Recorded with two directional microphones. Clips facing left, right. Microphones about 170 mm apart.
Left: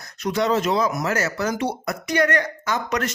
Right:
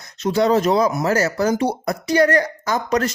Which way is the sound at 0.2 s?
30° right (ahead or behind).